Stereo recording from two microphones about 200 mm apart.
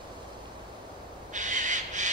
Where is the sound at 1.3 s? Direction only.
40° right (ahead or behind).